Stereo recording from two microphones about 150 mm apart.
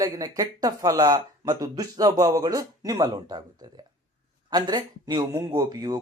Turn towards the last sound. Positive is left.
turn(degrees=-25)  # may be behind; listen again after turning